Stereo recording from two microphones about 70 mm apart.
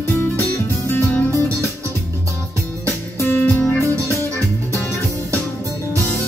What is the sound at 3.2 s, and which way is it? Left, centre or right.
Music, left.